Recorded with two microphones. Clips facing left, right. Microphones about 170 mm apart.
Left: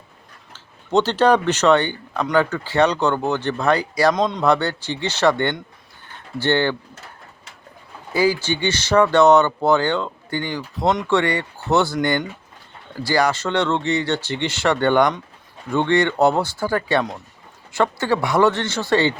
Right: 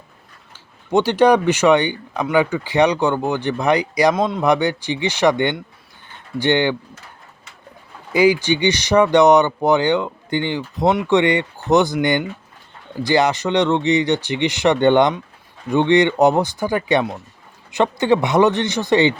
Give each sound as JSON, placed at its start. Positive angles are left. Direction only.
{"t": 0.5, "sound": "speech", "side_deg": -10}
{"t": 4.1, "sound": "speech", "side_deg": -5}
{"t": 8.1, "sound": "a man's voice", "side_deg": -20}